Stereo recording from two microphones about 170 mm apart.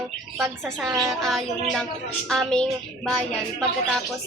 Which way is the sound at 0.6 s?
Centre (ahead or behind).